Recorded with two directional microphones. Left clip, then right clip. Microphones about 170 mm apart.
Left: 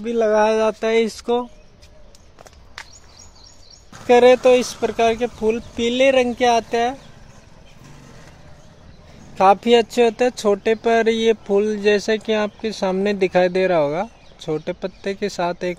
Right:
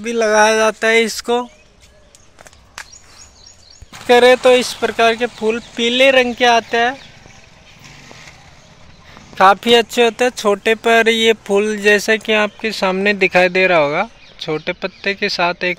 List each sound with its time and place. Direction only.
0.0 s speech: 5° right (ahead or behind)
4.1 s speech: 5° left (ahead or behind)
7.8 s vehicle: 45° left (ahead or behind)
9.3 s speech: 5° left (ahead or behind)